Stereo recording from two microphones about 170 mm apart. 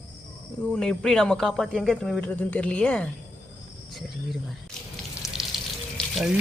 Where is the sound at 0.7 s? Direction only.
5° left (ahead or behind).